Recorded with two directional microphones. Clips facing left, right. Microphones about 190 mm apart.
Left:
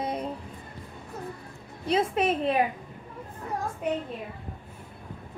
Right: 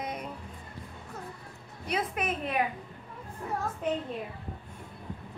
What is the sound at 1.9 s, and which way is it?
Speech, 30° left (ahead or behind).